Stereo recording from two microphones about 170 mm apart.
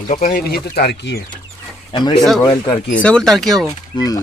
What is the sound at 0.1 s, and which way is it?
Speech, 55° left (ahead or behind).